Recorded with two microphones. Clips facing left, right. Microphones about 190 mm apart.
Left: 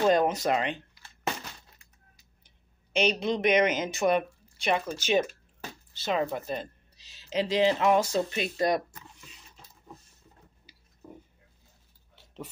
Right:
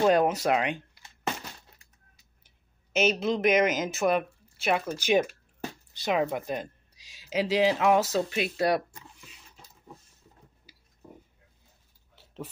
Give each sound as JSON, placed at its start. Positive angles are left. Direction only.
{"t": 0.0, "sound": "speech", "side_deg": -10}
{"t": 2.4, "sound": "speech", "side_deg": -5}